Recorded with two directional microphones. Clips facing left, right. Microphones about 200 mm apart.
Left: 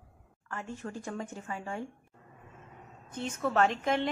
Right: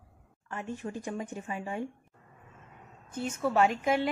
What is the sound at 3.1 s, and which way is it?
Speech, 10° right (ahead or behind).